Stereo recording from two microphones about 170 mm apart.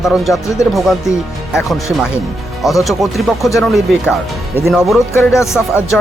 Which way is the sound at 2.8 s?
Centre (ahead or behind).